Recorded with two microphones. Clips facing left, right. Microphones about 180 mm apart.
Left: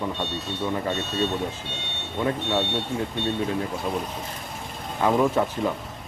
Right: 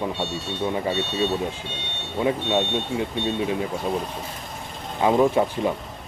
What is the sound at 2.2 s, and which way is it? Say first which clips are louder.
Speech: right 3 dB; 15° right (ahead or behind).